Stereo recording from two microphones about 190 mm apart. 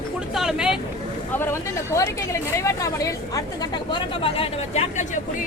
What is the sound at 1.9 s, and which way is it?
A woman's voice, 15° left (ahead or behind).